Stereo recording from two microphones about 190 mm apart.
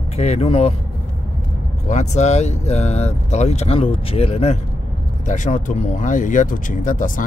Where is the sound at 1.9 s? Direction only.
40° left (ahead or behind).